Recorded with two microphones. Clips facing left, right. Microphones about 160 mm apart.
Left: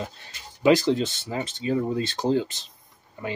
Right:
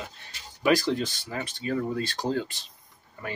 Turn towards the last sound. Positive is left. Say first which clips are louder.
# left 4 dB
turn(degrees=20)  # may be behind; listen again after turning